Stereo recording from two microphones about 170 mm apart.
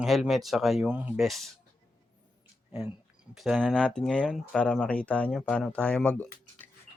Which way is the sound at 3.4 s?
Centre (ahead or behind).